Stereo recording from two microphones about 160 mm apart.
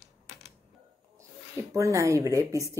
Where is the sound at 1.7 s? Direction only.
20° right (ahead or behind).